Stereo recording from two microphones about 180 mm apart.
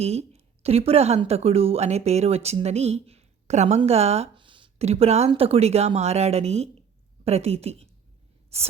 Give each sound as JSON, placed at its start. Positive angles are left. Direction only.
{"t": 0.0, "sound": "a woman's voice", "side_deg": -35}